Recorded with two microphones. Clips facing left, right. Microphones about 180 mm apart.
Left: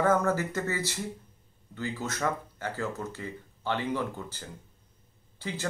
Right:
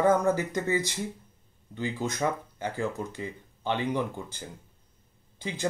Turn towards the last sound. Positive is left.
turn(degrees=-15)  # may be behind; listen again after turning